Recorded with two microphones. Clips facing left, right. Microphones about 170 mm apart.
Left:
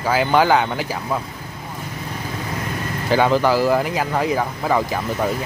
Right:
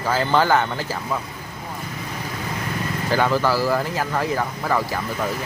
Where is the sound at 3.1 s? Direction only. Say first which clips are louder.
Left 4 dB; 15° left (ahead or behind).